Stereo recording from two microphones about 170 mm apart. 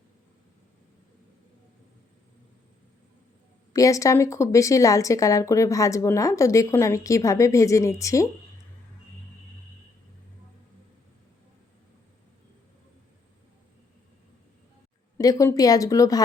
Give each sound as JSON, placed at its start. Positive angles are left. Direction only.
{"t": 3.7, "sound": "speech", "side_deg": 20}
{"t": 15.2, "sound": "speech", "side_deg": 20}